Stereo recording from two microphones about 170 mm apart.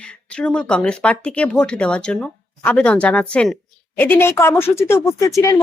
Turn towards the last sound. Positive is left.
turn(degrees=20)  # may be behind; listen again after turning